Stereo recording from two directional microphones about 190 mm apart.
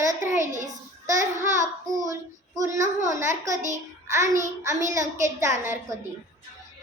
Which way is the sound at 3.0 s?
15° right (ahead or behind).